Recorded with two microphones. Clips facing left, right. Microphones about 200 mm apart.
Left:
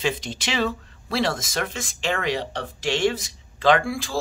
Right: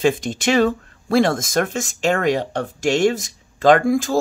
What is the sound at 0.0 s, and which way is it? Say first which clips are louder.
Speech: right 8 dB; 50° right (ahead or behind).